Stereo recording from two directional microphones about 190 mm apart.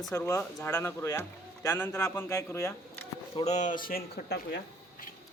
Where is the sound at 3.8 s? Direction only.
55° left (ahead or behind).